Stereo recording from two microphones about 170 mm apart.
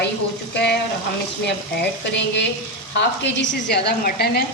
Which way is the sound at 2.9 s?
80° left.